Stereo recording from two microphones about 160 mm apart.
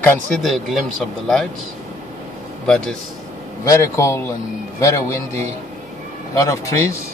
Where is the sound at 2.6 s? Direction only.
5° left (ahead or behind).